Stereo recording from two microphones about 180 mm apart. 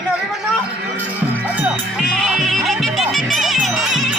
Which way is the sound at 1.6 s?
Centre (ahead or behind).